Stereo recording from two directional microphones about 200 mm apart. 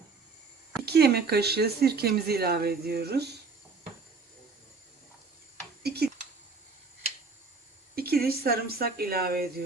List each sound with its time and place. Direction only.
0.9 s speech: 55° right (ahead or behind)
5.8 s a sound: 55° right (ahead or behind)
7.9 s speech: 50° right (ahead or behind)